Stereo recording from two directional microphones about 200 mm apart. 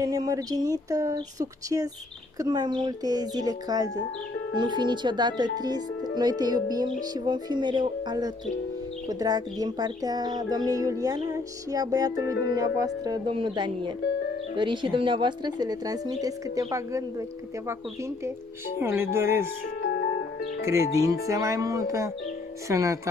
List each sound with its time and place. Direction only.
0.0 s speech: 20° right (ahead or behind)
18.8 s speech: 10° right (ahead or behind)
19.8 s music: 55° left (ahead or behind)
20.6 s speech: 15° right (ahead or behind)